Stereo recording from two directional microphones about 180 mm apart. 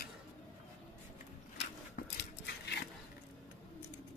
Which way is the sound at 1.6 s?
65° left (ahead or behind).